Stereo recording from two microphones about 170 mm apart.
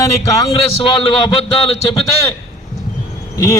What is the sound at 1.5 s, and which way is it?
Speech, 35° left (ahead or behind).